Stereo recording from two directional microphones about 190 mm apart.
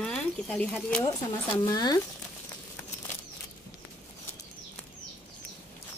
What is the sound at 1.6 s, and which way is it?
Speech, 20° left (ahead or behind).